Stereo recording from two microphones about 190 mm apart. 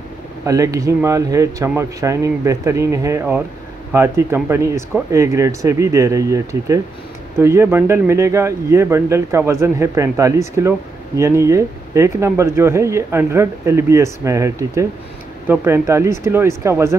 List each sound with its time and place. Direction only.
0.5 s speech: 15° right (ahead or behind)